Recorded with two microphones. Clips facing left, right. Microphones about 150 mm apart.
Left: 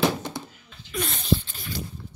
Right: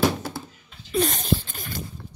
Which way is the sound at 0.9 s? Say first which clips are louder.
Right 3 dB; 45° right (ahead or behind).